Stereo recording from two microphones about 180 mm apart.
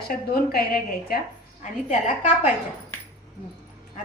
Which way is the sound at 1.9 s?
45° left (ahead or behind).